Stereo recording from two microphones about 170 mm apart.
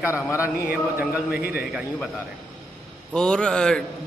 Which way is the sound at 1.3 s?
65° left (ahead or behind).